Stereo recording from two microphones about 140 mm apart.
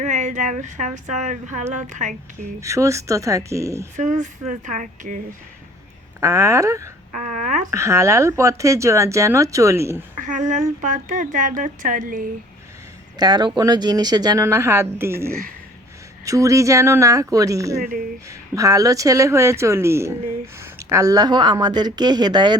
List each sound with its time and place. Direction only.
0.0 s a woman's voice: 60° right (ahead or behind)
2.6 s speech: 20° right (ahead or behind)
3.9 s speech: 60° right (ahead or behind)
6.1 s speech: 20° right (ahead or behind)
7.2 s speech: 65° right (ahead or behind)
7.7 s speech: 20° right (ahead or behind)
10.2 s speech: 60° right (ahead or behind)
13.1 s speech: 30° right (ahead or behind)
15.3 s speech: 90° right
16.2 s speech: 25° right (ahead or behind)